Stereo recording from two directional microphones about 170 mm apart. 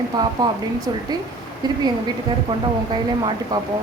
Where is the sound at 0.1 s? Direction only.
25° right (ahead or behind).